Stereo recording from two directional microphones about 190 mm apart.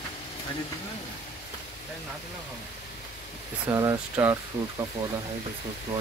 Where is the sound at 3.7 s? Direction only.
15° right (ahead or behind).